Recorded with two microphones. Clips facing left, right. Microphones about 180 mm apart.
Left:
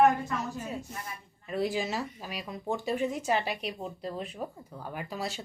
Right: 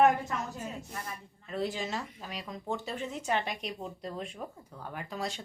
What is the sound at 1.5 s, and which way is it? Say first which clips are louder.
A woman's voice: left 3 dB; 10° left (ahead or behind).